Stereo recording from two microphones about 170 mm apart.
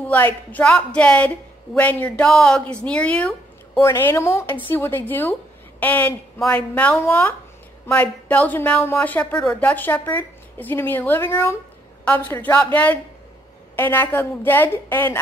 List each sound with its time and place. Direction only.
0.0 s speech: 10° left (ahead or behind)